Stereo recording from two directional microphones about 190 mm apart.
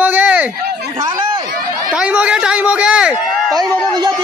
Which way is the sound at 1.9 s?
5° right (ahead or behind).